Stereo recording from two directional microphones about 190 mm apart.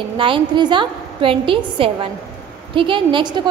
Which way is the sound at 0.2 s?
25° right (ahead or behind).